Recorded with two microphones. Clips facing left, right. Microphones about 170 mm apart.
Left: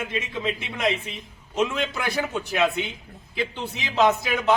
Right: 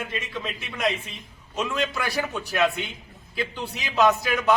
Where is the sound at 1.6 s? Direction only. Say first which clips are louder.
Left 2 dB; 20° left (ahead or behind).